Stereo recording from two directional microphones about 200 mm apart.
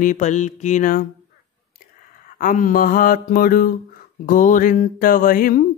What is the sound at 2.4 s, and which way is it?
Speech, 40° left (ahead or behind).